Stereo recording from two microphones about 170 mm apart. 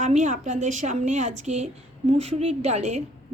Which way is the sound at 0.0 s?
45° right (ahead or behind).